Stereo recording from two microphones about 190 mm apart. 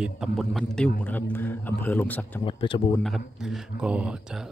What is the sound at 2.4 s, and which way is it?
Speech, 25° left (ahead or behind).